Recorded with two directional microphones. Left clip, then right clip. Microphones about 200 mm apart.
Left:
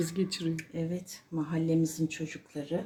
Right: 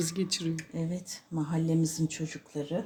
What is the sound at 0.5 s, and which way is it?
Speech, 40° right (ahead or behind).